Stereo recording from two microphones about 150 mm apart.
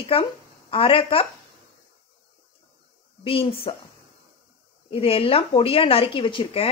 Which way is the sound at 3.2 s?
40° left (ahead or behind).